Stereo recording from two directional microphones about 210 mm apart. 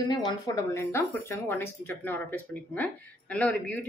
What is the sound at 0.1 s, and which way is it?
A woman's voice, 15° left (ahead or behind).